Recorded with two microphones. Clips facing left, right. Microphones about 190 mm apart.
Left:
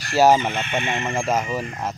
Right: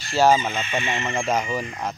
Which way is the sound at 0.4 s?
65° left (ahead or behind).